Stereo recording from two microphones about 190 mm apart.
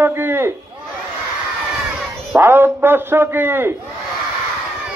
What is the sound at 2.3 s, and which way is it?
A man's voice, 10° right (ahead or behind).